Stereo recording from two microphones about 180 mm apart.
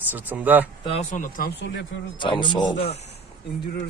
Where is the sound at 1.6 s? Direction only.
80° left.